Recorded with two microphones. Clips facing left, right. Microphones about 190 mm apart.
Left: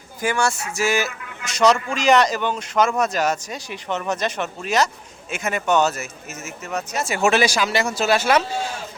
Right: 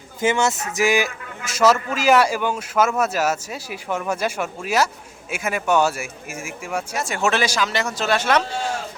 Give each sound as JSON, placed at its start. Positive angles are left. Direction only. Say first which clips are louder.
{"t": 0.2, "sound": "speech", "louder": "right 2 dB", "side_deg": -20}
{"t": 1.5, "sound": "speech", "louder": "even", "side_deg": -5}
{"t": 7.0, "sound": "speech", "louder": "left 4 dB", "side_deg": 5}